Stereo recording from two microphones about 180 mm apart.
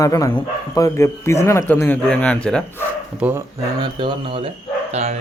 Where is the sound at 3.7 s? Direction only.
25° right (ahead or behind).